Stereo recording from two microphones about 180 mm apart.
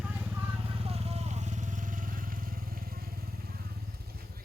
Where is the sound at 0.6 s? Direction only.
35° right (ahead or behind); by 3.7 s 55° right (ahead or behind).